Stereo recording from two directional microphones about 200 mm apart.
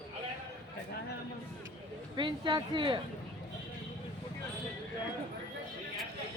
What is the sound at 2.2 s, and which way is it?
Speech, 25° right (ahead or behind).